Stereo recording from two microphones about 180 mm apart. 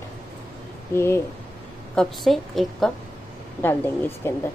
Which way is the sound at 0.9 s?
15° left (ahead or behind).